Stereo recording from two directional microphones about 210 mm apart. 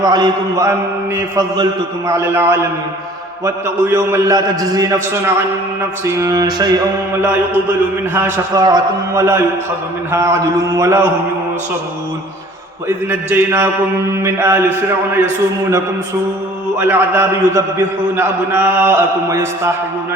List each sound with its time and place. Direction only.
0.0 s a man's voice: 20° right (ahead or behind)
6.1 s music: 15° right (ahead or behind)
8.1 s a man's voice: 15° right (ahead or behind)
13.1 s a man's voice: 10° right (ahead or behind)
16.7 s a man's voice: 10° right (ahead or behind)